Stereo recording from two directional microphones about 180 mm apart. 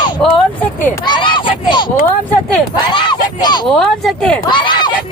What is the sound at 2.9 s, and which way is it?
Speech, 25° left (ahead or behind).